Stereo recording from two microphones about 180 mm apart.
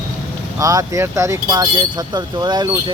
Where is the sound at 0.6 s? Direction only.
20° right (ahead or behind).